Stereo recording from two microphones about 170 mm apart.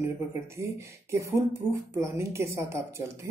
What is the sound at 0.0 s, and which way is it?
Speech, 15° right (ahead or behind).